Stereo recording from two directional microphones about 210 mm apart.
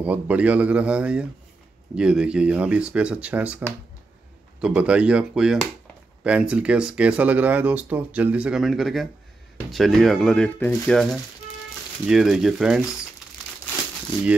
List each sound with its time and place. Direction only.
0.0 s a man's voice: 5° right (ahead or behind)